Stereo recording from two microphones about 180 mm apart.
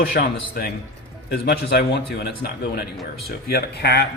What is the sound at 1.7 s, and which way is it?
Speech, 65° left (ahead or behind).